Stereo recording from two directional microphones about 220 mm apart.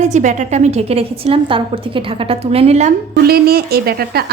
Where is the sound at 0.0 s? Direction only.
35° right (ahead or behind).